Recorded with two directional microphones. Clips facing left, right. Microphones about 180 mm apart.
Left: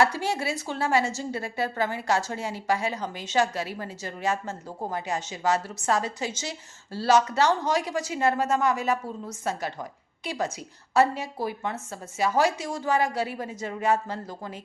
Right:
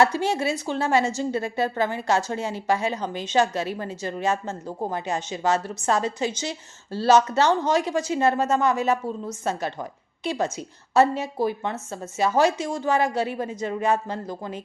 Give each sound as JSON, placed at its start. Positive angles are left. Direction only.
{"t": 0.0, "sound": "a woman's voice", "side_deg": -20}